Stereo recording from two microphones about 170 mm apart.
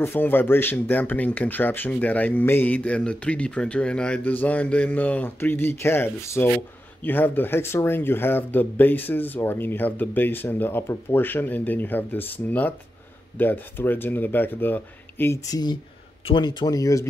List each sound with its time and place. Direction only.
0.0 s speech: 10° left (ahead or behind)